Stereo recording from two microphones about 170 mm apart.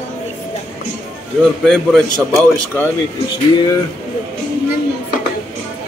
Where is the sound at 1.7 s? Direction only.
5° left (ahead or behind).